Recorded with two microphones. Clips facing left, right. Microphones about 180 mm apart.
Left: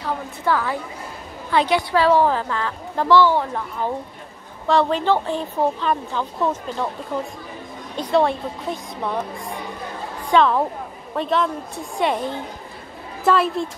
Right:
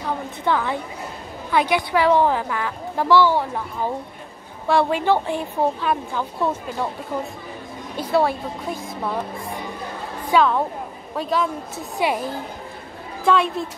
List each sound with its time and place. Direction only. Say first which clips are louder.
0.0 s a woman's voice: even; 20° right (ahead or behind)
7.9 s a woman's voice: left 1 dB; 5° right (ahead or behind)
10.3 s a woman's voice: left 1 dB; centre (ahead or behind)